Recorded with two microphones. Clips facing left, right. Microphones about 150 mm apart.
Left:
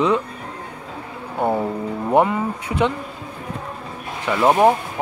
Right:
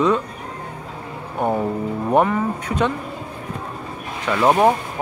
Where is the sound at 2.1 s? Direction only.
15° left (ahead or behind).